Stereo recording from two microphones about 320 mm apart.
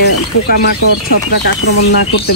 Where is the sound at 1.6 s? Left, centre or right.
Left.